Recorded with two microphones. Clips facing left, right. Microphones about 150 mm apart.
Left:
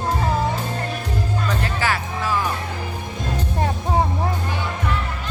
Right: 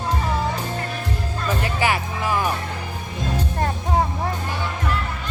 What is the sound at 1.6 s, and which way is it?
Music, 15° right (ahead or behind).